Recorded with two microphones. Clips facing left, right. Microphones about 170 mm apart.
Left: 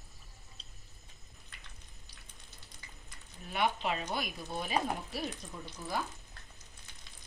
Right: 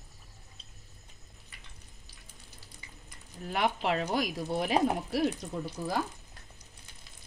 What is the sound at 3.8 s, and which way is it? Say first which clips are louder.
Speech: right 6 dB; 75° right (ahead or behind).